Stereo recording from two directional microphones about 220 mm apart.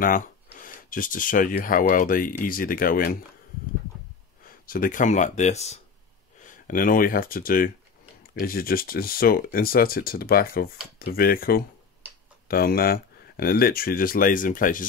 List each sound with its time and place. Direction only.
0.0 s speech: 40° left (ahead or behind)
4.5 s speech: 40° left (ahead or behind)